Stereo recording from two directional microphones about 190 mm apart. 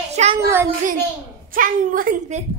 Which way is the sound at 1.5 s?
45° right (ahead or behind).